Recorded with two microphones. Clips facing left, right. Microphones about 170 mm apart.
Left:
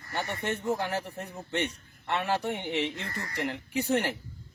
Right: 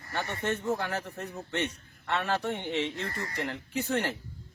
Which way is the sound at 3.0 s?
20° right (ahead or behind).